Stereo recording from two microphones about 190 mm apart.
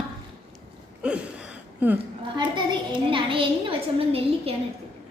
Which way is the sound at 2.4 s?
25° right (ahead or behind).